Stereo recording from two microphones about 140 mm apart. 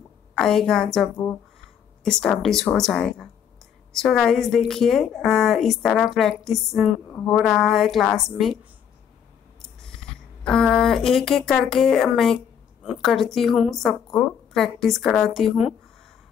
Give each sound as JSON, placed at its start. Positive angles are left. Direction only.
{"t": 0.4, "sound": "a woman's voice", "side_deg": 5}
{"t": 1.1, "sound": "speech", "side_deg": 20}
{"t": 2.0, "sound": "a woman's voice", "side_deg": 5}
{"t": 10.4, "sound": "a woman's voice", "side_deg": 5}